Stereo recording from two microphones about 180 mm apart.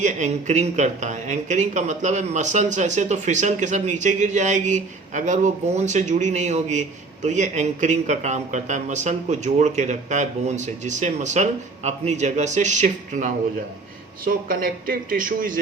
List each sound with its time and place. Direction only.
0.0 s speech: 40° right (ahead or behind)